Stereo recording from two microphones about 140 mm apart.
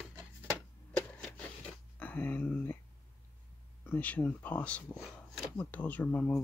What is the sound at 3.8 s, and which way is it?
Speech, 10° left (ahead or behind).